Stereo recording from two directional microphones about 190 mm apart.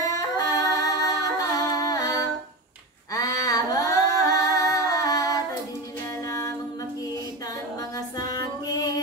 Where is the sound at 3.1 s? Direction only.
20° left (ahead or behind).